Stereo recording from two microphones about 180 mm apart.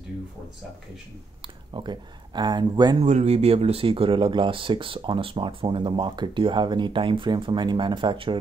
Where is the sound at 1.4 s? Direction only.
25° right (ahead or behind).